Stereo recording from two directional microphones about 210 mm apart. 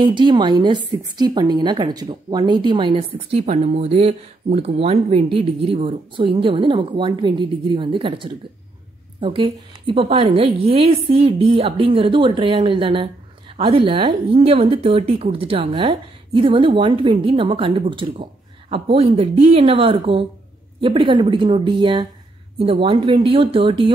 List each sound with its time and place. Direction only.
0.0 s a woman's voice: 20° right (ahead or behind)